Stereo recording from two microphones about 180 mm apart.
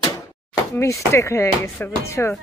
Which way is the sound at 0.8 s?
15° left (ahead or behind).